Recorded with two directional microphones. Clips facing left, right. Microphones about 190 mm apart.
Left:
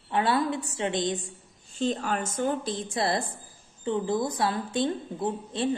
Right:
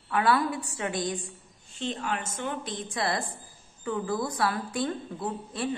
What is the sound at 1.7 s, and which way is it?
A woman's voice, 40° left (ahead or behind).